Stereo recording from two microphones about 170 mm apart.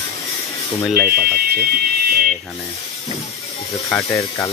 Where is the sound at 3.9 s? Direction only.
20° left (ahead or behind).